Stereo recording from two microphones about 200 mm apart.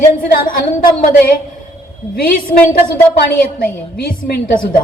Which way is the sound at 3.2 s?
50° left (ahead or behind).